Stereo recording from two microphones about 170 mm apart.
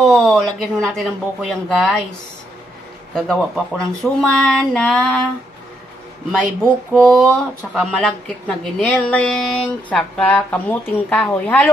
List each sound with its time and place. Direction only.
0.0 s speech: 5° left (ahead or behind)
3.2 s speech: centre (ahead or behind)
6.4 s speech: 10° right (ahead or behind)
7.0 s speech: 5° left (ahead or behind)